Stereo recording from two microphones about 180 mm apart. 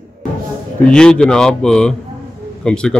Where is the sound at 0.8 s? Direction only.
5° left (ahead or behind).